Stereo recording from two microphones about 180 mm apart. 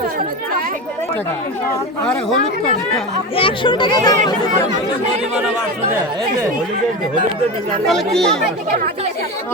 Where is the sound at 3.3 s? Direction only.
30° left (ahead or behind).